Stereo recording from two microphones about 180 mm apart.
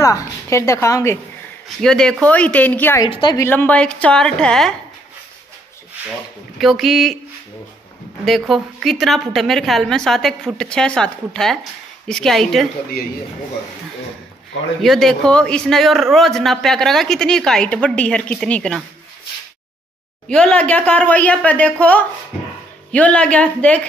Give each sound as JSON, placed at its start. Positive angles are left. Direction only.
{"t": 0.0, "sound": "a woman's voice", "side_deg": 15}
{"t": 1.8, "sound": "a woman's voice", "side_deg": 5}
{"t": 3.1, "sound": "a woman's voice", "side_deg": 25}
{"t": 3.4, "sound": "a man's voice", "side_deg": 10}
{"t": 6.6, "sound": "a man's voice", "side_deg": 0}
{"t": 8.3, "sound": "a man's voice", "side_deg": 0}
{"t": 14.8, "sound": "a man's voice", "side_deg": 0}
{"t": 20.2, "sound": "a woman's voice", "side_deg": 5}